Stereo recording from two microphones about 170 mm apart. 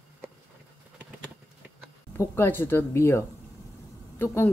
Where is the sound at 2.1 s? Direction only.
15° left (ahead or behind).